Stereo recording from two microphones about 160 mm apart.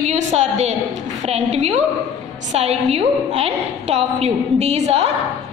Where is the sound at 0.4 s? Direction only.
45° right (ahead or behind).